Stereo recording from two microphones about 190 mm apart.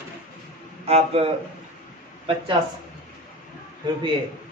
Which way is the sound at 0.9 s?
30° right (ahead or behind).